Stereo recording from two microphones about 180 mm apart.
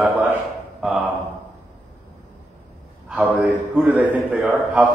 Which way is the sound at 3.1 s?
5° right (ahead or behind).